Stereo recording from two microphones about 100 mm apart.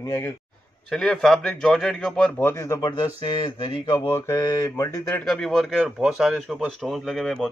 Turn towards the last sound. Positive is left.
turn(degrees=5)  # may be behind; listen again after turning